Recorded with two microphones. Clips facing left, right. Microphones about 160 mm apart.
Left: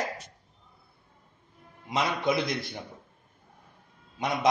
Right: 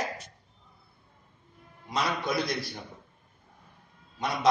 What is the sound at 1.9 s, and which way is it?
Speech, 20° left (ahead or behind).